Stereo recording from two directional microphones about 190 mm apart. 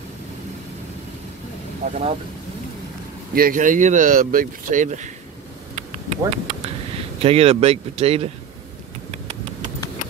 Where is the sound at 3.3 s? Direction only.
50° right (ahead or behind).